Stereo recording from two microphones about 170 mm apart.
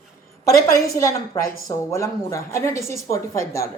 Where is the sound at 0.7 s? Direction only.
20° left (ahead or behind).